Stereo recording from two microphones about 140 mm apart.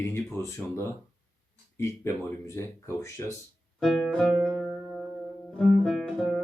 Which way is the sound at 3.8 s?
Centre (ahead or behind).